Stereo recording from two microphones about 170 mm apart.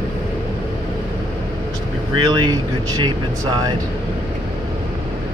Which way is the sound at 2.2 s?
25° right (ahead or behind).